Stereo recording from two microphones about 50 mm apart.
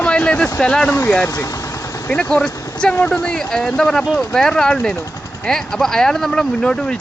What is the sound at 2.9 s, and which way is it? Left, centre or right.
Speech, left.